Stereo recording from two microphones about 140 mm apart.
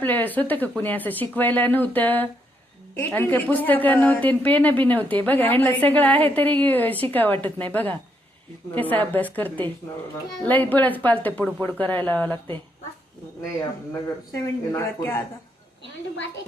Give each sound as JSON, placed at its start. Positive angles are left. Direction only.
{"t": 0.0, "sound": "a woman's voice", "side_deg": 15}
{"t": 14.3, "sound": "speech", "side_deg": 20}